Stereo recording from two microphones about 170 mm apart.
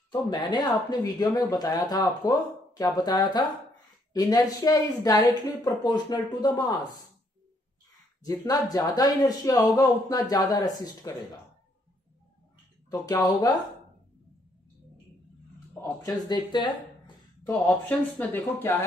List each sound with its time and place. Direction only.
0.1 s speech: 25° left (ahead or behind)
8.2 s speech: 20° left (ahead or behind)
12.9 s speech: 20° left (ahead or behind)
15.7 s speech: 20° left (ahead or behind)
17.5 s speech: 10° left (ahead or behind)